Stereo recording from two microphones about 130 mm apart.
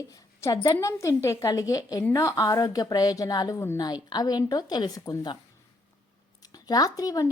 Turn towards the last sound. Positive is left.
turn(degrees=30)  # may be behind; listen again after turning